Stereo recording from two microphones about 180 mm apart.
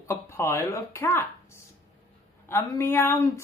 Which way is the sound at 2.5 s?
15° left (ahead or behind).